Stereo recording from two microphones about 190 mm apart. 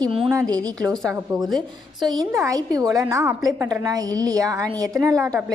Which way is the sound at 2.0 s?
15° right (ahead or behind).